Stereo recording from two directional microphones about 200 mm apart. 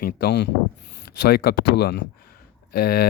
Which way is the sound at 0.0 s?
55° left (ahead or behind).